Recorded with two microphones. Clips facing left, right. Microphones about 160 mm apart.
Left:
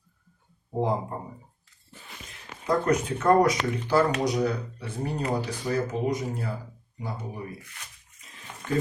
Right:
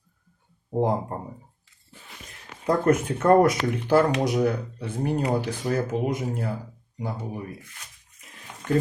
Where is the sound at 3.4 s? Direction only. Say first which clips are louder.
Right 2 dB; 55° right (ahead or behind).